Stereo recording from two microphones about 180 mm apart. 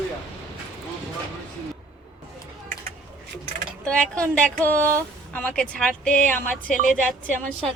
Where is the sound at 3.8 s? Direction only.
5° left (ahead or behind).